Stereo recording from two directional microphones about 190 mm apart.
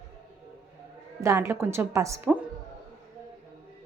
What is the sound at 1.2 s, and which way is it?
A woman's voice, 15° right (ahead or behind).